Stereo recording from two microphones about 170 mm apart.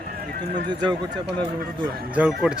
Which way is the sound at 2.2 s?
5° right (ahead or behind).